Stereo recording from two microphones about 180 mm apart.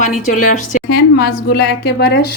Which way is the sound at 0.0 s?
45° left (ahead or behind).